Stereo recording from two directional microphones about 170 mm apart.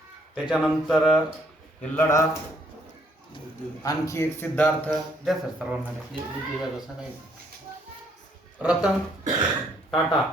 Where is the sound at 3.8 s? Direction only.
20° left (ahead or behind).